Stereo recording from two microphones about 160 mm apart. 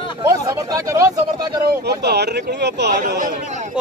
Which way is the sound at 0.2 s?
20° right (ahead or behind).